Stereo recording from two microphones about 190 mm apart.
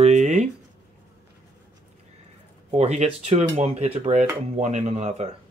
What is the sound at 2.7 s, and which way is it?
Speech, 35° right (ahead or behind).